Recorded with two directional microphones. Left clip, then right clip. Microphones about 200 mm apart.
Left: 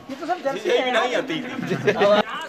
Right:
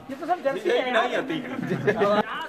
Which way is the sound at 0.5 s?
50° left (ahead or behind).